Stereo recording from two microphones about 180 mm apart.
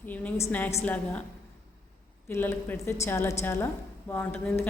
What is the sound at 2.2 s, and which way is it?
Speech, 10° left (ahead or behind).